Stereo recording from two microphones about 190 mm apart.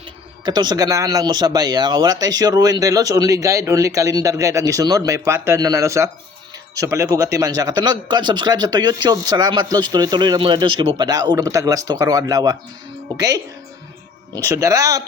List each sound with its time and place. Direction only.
0.4 s speech: 20° right (ahead or behind)